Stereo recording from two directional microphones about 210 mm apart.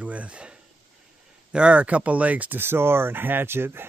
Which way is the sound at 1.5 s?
5° right (ahead or behind).